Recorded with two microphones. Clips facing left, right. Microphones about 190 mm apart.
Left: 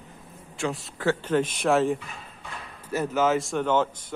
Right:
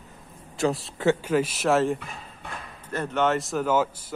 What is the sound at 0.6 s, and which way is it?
Speech, 35° right (ahead or behind).